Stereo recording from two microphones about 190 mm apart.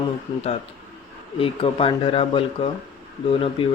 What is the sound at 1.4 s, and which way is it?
Speech, 30° left (ahead or behind).